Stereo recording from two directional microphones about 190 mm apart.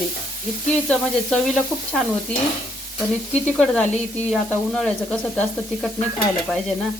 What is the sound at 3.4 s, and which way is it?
Sizzle, 5° left (ahead or behind).